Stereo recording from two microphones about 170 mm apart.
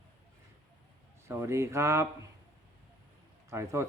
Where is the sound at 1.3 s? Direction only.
15° right (ahead or behind).